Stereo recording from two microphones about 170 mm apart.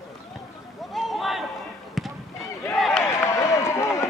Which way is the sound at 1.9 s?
Centre (ahead or behind).